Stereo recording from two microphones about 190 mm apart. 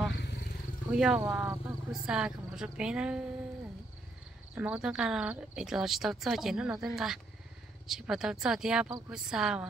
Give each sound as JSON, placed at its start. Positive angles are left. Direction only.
{"t": 0.2, "sound": "vehicle", "side_deg": 60}
{"t": 0.9, "sound": "speech", "side_deg": -5}
{"t": 4.6, "sound": "speech", "side_deg": -5}